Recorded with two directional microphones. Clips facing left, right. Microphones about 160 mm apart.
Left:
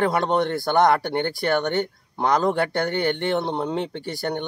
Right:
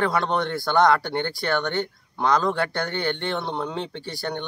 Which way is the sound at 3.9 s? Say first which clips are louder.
Left 3 dB; 50° left (ahead or behind).